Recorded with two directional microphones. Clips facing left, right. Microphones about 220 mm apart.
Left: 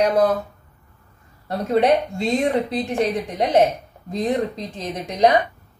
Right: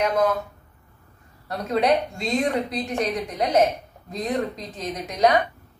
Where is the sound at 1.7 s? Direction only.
30° left (ahead or behind).